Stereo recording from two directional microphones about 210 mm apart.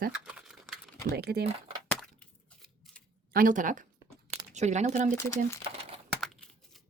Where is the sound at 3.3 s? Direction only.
40° right (ahead or behind).